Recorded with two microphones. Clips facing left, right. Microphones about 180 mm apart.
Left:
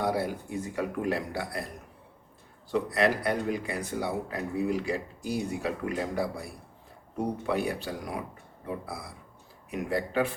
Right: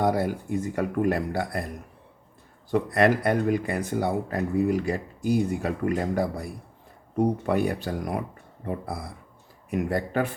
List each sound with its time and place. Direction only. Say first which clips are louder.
0.0 s speech: right 5 dB; 50° right (ahead or behind)
2.6 s speech: right 5 dB; 55° right (ahead or behind)